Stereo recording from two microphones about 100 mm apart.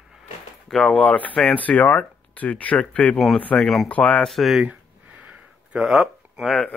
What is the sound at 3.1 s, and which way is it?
Speech, centre (ahead or behind).